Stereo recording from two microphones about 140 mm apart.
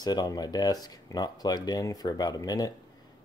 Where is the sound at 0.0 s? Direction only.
30° left (ahead or behind).